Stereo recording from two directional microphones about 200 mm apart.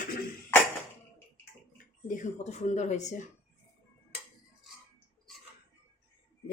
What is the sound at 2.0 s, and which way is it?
Speech, 35° left (ahead or behind).